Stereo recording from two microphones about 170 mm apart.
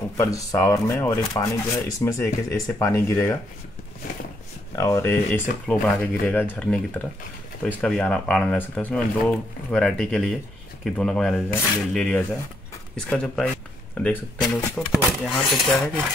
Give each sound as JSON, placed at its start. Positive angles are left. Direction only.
{"t": 0.2, "sound": "speech", "side_deg": 20}
{"t": 4.7, "sound": "speech", "side_deg": 15}